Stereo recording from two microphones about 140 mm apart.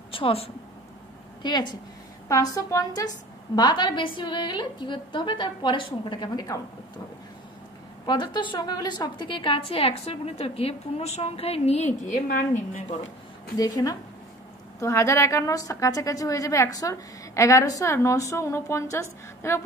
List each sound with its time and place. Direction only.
0.1 s a woman's voice: 40° left (ahead or behind)
8.1 s a woman's voice: 35° left (ahead or behind); by 12.8 s 70° left (ahead or behind)
13.6 s a woman's voice: 25° left (ahead or behind)